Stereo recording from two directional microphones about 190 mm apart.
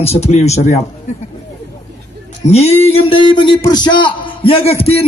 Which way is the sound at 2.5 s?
35° left (ahead or behind).